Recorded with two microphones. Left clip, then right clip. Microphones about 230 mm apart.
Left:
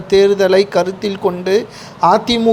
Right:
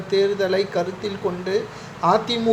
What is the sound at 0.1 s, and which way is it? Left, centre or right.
Speech, left.